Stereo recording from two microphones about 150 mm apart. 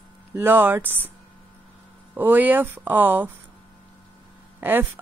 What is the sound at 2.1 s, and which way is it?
Speech, 10° right (ahead or behind).